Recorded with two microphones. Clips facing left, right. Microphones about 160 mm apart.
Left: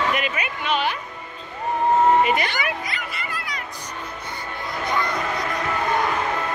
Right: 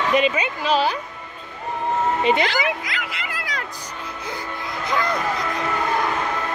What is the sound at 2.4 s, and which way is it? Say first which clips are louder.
Music: right 4 dB; 90° right.